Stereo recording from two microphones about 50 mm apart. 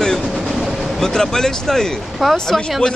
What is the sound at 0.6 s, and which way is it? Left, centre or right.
Vehicle, centre.